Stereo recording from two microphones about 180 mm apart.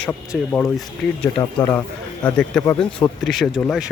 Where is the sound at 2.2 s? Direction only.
10° left (ahead or behind).